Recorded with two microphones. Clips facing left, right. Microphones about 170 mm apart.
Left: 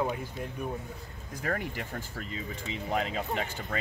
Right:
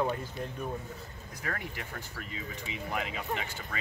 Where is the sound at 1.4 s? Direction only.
40° left (ahead or behind).